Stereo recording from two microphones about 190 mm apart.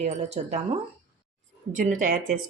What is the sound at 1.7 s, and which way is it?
Speech, 40° right (ahead or behind).